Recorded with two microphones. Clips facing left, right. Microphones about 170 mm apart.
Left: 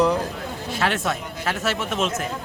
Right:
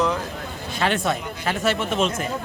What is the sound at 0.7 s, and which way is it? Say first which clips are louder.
Speech: right 2 dB; 5° left (ahead or behind).